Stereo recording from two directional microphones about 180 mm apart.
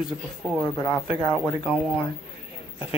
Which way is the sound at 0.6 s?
15° left (ahead or behind).